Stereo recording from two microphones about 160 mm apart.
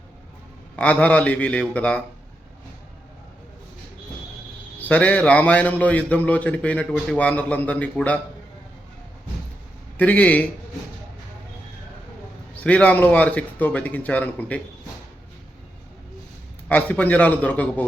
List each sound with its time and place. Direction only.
0.8 s a man's voice: 10° left (ahead or behind)
4.8 s a man's voice: 10° left (ahead or behind)
10.0 s a man's voice: 10° left (ahead or behind)
12.6 s a man's voice: 10° left (ahead or behind)
16.6 s a man's voice: 10° left (ahead or behind)